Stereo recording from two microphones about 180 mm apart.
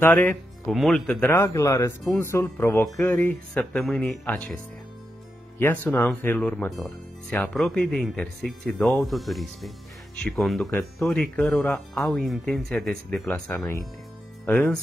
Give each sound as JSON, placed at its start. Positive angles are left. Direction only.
{"t": 0.0, "sound": "speech", "side_deg": 10}
{"t": 5.6, "sound": "speech", "side_deg": 10}